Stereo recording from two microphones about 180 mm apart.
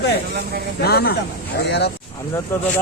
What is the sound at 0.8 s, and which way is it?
Speech, 60° left (ahead or behind).